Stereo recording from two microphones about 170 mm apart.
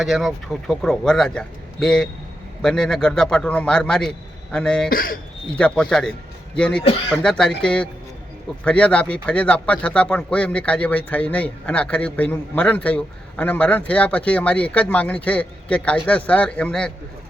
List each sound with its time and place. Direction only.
0.0 s a man's voice: centre (ahead or behind)
4.9 s speech: 55° left (ahead or behind)
5.5 s a man's voice: 5° left (ahead or behind)